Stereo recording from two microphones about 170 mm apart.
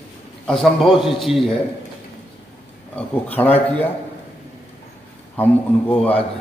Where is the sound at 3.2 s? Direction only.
10° left (ahead or behind).